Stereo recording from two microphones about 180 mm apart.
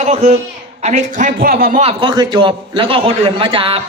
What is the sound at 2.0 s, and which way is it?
A man's voice, 25° right (ahead or behind).